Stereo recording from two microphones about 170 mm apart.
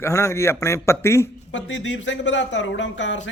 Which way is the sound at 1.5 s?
90° left.